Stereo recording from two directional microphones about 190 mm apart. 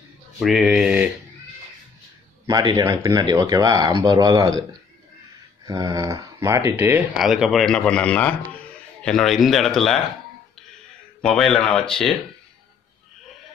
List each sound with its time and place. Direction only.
0.4 s speech: centre (ahead or behind)
2.4 s speech: 20° right (ahead or behind)
5.7 s speech: 20° right (ahead or behind); by 9.9 s centre (ahead or behind)
11.1 s speech: 5° left (ahead or behind)